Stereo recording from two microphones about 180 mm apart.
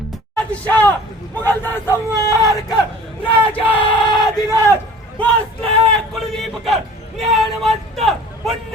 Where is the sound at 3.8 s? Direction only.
25° left (ahead or behind).